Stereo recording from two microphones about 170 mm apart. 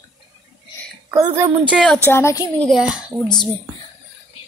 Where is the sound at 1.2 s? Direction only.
15° right (ahead or behind).